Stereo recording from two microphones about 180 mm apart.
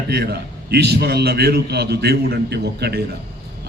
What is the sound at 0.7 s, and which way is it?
A man's voice, 65° right (ahead or behind).